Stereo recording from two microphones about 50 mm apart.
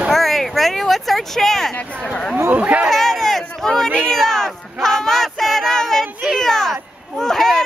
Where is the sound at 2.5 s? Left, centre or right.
Right.